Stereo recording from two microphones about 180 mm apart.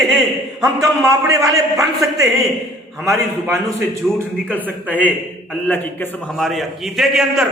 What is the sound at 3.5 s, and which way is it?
A man's voice, 15° right (ahead or behind).